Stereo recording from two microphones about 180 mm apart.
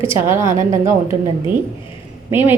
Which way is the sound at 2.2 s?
10° right (ahead or behind).